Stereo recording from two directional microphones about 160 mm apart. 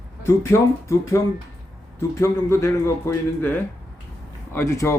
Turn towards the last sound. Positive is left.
turn(degrees=15)  # may be behind; listen again after turning